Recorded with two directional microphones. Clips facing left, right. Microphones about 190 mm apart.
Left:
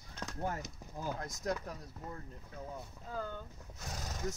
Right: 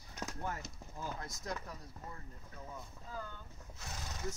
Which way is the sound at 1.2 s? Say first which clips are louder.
Left 4 dB; 45° left (ahead or behind).